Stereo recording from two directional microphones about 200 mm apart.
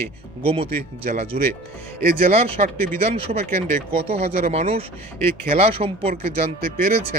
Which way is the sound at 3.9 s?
30° right (ahead or behind).